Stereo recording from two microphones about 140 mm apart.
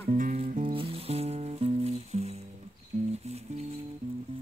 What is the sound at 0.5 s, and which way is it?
Music, 75° right (ahead or behind).